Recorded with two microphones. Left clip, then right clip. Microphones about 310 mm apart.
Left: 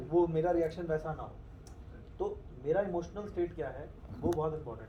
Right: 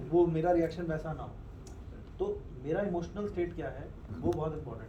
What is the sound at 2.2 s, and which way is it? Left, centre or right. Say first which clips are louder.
A man's voice: right 1 dB; left.